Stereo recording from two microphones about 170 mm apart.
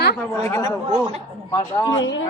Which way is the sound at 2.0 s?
90° left.